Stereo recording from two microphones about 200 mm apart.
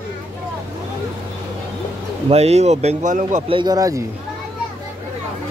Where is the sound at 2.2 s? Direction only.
30° right (ahead or behind).